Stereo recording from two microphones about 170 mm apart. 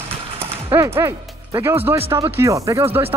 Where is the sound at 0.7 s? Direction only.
15° right (ahead or behind).